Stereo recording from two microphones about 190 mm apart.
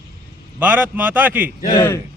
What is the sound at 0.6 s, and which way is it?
Speech, 10° right (ahead or behind).